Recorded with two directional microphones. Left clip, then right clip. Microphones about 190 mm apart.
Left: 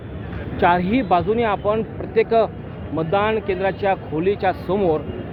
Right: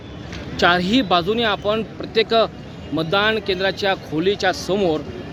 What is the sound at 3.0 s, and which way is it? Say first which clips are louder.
Speech: right 1 dB; 90° right.